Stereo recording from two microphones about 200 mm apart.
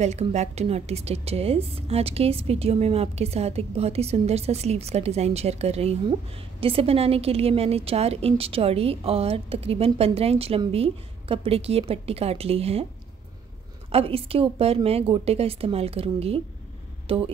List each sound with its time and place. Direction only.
0.0 s a woman's voice: 35° right (ahead or behind)
13.9 s a woman's voice: 30° right (ahead or behind)